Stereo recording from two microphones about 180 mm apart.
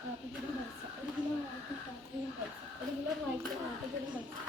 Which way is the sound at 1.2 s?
25° right (ahead or behind).